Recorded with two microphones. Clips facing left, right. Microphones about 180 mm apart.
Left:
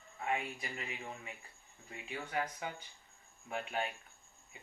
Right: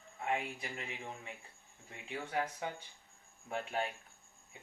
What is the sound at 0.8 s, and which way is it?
Speech, 25° right (ahead or behind).